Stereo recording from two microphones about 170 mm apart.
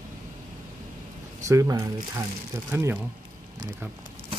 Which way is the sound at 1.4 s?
20° right (ahead or behind).